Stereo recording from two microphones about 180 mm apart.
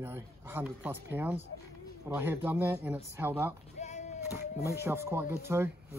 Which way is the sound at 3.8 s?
40° left (ahead or behind).